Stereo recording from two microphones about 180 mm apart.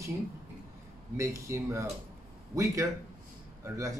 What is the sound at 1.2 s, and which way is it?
Speech, 15° right (ahead or behind).